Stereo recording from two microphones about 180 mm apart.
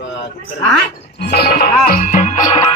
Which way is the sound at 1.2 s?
60° left (ahead or behind).